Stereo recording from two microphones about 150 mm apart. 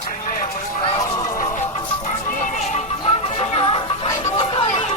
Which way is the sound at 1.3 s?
60° left (ahead or behind).